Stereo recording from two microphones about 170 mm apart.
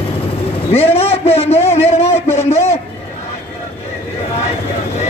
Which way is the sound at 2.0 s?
15° left (ahead or behind).